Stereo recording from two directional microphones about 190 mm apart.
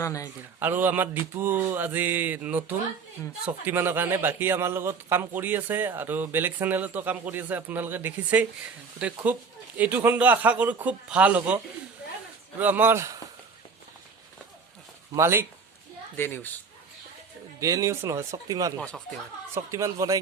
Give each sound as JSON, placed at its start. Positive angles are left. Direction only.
{"t": 0.0, "sound": "a woman's voice", "side_deg": 15}
{"t": 0.6, "sound": "speech", "side_deg": -10}
{"t": 15.1, "sound": "speech", "side_deg": -15}
{"t": 16.1, "sound": "a woman's voice", "side_deg": 10}
{"t": 17.6, "sound": "speech", "side_deg": -15}
{"t": 18.8, "sound": "speech", "side_deg": 5}
{"t": 19.5, "sound": "speech", "side_deg": -15}